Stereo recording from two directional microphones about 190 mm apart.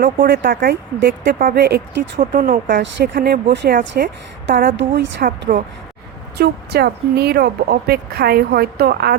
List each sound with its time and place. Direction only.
0.0 s speech: 55° right (ahead or behind)
0.9 s speech: 60° right (ahead or behind)
3.5 s speech: 65° right (ahead or behind)
6.3 s speech: 55° right (ahead or behind)